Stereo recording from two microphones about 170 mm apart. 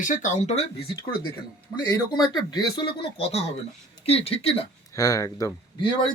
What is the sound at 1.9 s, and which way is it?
Speech, 25° left (ahead or behind).